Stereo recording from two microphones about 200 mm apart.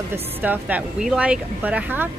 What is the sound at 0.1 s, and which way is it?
Speech, 10° right (ahead or behind).